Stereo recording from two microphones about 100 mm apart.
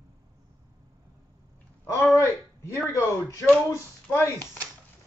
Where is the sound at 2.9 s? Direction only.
30° left (ahead or behind).